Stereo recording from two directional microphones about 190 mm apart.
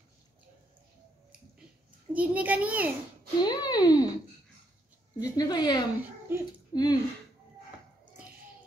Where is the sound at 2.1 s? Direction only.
10° right (ahead or behind).